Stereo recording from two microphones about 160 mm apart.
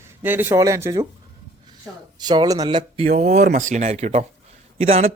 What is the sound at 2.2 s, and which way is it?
Speech, 25° right (ahead or behind).